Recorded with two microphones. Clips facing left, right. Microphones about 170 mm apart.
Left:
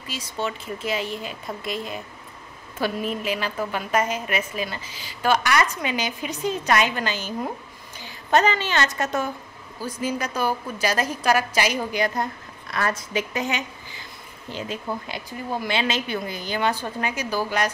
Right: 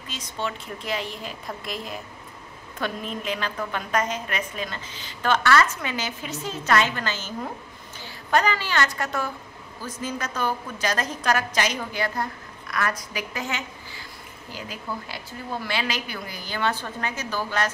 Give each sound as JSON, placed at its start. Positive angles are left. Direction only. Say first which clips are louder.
{"t": 0.1, "sound": "a woman's voice", "louder": "left 2 dB", "side_deg": 5}